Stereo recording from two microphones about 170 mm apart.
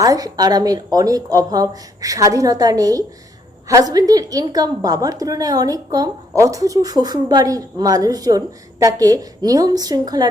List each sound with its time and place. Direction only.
0.0 s a woman's voice: 20° right (ahead or behind)